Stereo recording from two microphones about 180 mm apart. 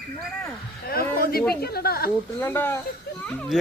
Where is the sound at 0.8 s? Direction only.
60° left (ahead or behind).